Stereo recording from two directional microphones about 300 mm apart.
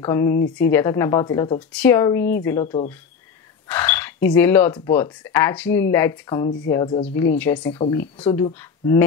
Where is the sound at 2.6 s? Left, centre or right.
Left.